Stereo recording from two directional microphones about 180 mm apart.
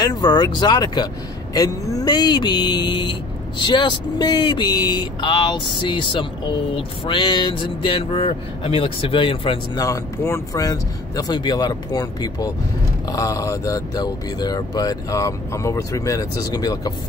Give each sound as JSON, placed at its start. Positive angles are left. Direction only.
{"t": 0.0, "sound": "speech", "side_deg": 25}
{"t": 9.8, "sound": "speech", "side_deg": 15}